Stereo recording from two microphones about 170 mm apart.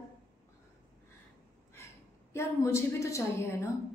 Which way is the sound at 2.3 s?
15° left (ahead or behind).